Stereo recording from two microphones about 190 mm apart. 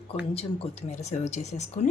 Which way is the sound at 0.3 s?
30° left (ahead or behind).